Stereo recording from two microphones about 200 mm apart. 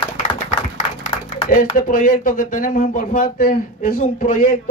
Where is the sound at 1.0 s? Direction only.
40° left (ahead or behind).